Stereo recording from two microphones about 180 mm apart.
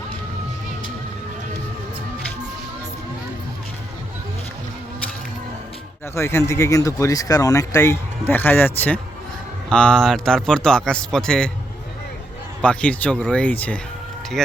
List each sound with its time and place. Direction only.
6.1 s speech: 15° left (ahead or behind)
12.6 s speech: 5° left (ahead or behind)